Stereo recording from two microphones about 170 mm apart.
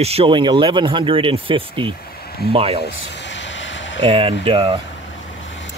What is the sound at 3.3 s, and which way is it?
Vehicle, 90° left.